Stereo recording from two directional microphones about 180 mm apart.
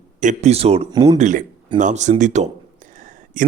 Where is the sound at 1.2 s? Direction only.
45° right (ahead or behind).